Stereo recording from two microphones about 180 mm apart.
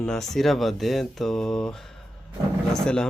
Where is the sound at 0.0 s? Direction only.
Centre (ahead or behind).